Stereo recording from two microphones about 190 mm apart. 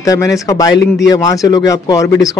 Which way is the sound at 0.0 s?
15° left (ahead or behind).